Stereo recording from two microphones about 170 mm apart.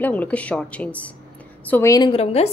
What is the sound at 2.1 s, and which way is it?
Speech, 35° left (ahead or behind).